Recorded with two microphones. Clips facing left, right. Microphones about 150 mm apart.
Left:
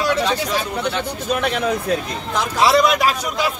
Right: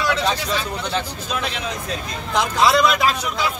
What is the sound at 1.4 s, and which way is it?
Speech, 60° left (ahead or behind).